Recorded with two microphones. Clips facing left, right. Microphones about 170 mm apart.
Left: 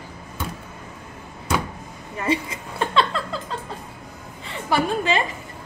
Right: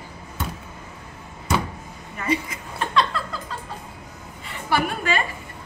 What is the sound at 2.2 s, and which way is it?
Laughter, 30° left (ahead or behind).